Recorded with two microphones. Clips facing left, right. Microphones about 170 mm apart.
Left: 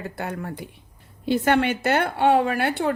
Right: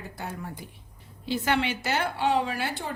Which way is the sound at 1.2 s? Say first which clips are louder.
Left 6 dB; 55° left (ahead or behind).